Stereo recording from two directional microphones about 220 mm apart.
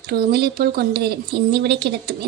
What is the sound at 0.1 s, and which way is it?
Speech, 45° right (ahead or behind).